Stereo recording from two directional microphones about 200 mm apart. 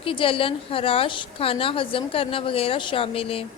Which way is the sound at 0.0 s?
25° left (ahead or behind).